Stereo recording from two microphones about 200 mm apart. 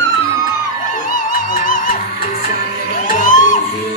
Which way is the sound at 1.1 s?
40° left (ahead or behind).